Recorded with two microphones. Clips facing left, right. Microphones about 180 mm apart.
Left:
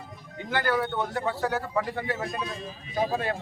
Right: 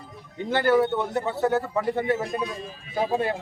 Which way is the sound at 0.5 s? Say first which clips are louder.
Right 6 dB; 25° right (ahead or behind).